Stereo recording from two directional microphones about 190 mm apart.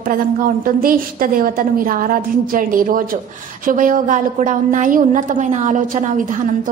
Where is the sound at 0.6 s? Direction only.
50° right (ahead or behind).